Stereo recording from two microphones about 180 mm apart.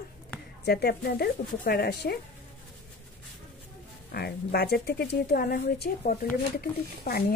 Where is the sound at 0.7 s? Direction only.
60° left (ahead or behind).